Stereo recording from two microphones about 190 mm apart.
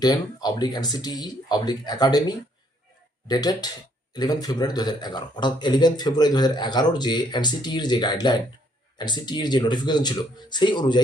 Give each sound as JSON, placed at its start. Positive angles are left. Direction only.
{"t": 0.0, "sound": "speech", "side_deg": 20}